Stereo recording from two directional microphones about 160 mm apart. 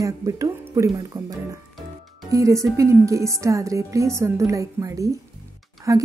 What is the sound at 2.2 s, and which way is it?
A woman's voice, 20° right (ahead or behind).